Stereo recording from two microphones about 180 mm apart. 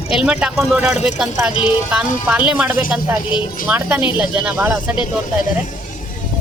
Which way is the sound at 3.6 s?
10° right (ahead or behind).